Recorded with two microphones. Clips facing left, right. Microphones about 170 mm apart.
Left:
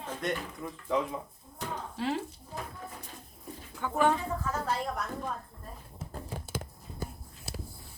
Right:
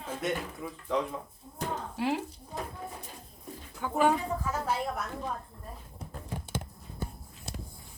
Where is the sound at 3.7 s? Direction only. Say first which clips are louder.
Right 1 dB; 10° right (ahead or behind).